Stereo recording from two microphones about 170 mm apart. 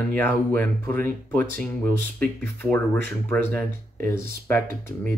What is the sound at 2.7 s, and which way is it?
Speech, 10° left (ahead or behind).